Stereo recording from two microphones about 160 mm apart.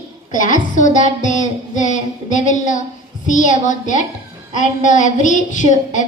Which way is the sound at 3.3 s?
50° left (ahead or behind).